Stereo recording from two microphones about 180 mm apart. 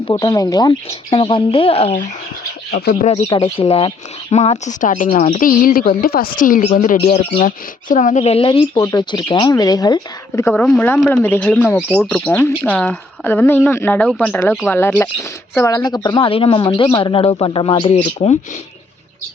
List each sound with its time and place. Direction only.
0.1 s speech: 20° left (ahead or behind)
2.7 s speech: 60° left (ahead or behind)
3.0 s speech: 35° left (ahead or behind); by 6.9 s 50° left (ahead or behind)
7.1 s speech: 30° left (ahead or behind)
7.4 s speech: 45° left (ahead or behind); by 10.5 s 20° left (ahead or behind)
10.5 s speech: 5° left (ahead or behind)
14.8 s speech: 10° left (ahead or behind); by 18.3 s 35° left (ahead or behind)